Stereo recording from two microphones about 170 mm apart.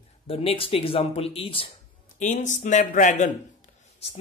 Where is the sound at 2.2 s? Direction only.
45° left (ahead or behind).